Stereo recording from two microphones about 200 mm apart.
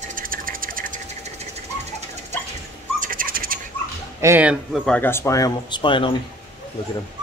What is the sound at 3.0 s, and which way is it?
Bird, 45° right (ahead or behind).